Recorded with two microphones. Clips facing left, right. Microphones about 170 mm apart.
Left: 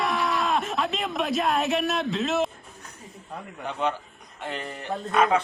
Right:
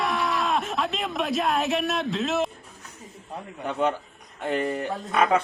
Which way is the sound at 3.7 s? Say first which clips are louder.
Right 3 dB; 45° right (ahead or behind).